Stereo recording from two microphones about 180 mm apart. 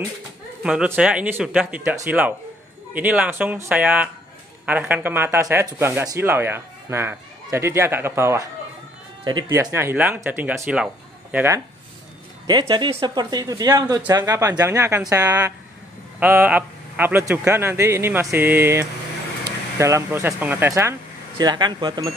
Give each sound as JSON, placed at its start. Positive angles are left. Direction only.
{"t": 0.7, "sound": "speech", "side_deg": -5}
{"t": 21.4, "sound": "speech", "side_deg": -25}